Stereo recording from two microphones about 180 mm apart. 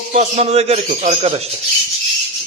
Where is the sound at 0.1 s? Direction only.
40° right (ahead or behind).